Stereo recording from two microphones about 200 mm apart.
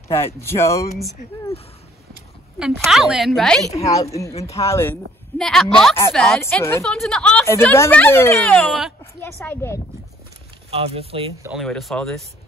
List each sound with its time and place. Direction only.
0.1 s speech: 15° left (ahead or behind)
2.6 s a woman's voice: centre (ahead or behind)
3.7 s speech: 15° left (ahead or behind)
5.4 s a woman's voice: centre (ahead or behind)
8.5 s a woman's voice: centre (ahead or behind)
9.4 s speech: 10° left (ahead or behind)
10.7 s speech: 30° right (ahead or behind)
11.5 s a woman's voice: centre (ahead or behind)